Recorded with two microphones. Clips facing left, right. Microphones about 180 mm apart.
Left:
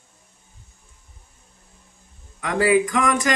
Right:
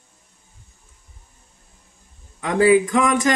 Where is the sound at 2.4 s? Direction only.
25° right (ahead or behind).